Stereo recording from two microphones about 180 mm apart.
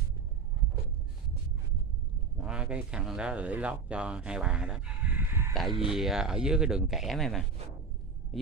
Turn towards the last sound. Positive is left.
turn(degrees=0)  # may be behind; listen again after turning